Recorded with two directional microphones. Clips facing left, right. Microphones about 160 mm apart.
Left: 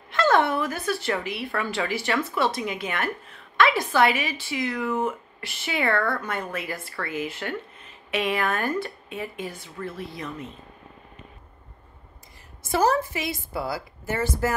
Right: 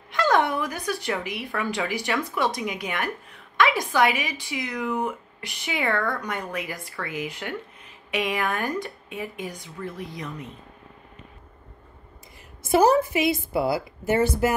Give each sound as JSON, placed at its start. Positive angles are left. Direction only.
{"t": 0.1, "sound": "speech", "side_deg": -15}
{"t": 12.7, "sound": "speech", "side_deg": -15}